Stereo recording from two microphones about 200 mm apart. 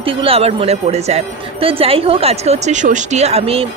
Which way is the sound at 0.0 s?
25° right (ahead or behind).